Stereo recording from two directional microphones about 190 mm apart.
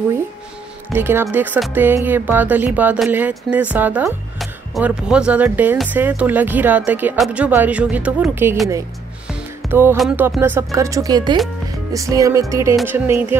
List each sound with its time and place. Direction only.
0.9 s speech: 10° right (ahead or behind)
9.3 s music: 10° right (ahead or behind)
9.9 s speech: 5° right (ahead or behind)